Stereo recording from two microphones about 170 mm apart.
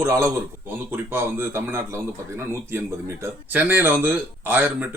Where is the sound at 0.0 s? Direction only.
15° right (ahead or behind).